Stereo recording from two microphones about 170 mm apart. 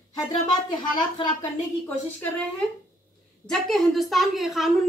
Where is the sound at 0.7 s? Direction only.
25° left (ahead or behind).